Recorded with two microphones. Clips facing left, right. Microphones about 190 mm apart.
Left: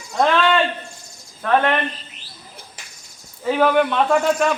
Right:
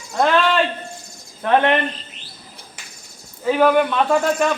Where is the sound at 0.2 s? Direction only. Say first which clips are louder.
Even; centre (ahead or behind).